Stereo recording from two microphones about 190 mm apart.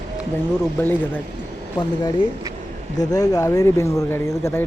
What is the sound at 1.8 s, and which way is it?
Speech, 25° left (ahead or behind).